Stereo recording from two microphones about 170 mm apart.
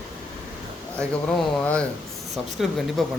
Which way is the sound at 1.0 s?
5° left (ahead or behind).